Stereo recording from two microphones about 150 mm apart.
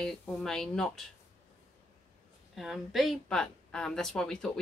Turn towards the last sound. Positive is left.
turn(degrees=5)  # may be behind; listen again after turning